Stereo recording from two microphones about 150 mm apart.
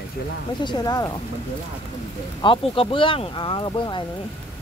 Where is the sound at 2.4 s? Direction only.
35° left (ahead or behind).